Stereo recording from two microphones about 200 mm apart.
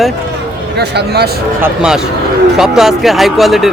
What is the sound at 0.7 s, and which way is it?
Speech, 55° right (ahead or behind).